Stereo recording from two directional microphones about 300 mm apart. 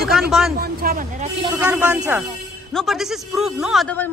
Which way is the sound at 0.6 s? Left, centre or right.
Right.